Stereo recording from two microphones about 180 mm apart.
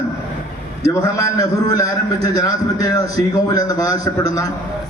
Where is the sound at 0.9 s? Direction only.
20° left (ahead or behind).